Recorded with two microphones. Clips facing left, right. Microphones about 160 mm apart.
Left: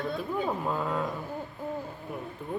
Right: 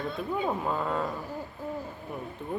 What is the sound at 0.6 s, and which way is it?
Speech, centre (ahead or behind).